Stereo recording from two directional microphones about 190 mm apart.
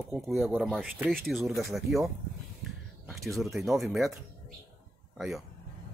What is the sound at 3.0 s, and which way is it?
Speech, centre (ahead or behind).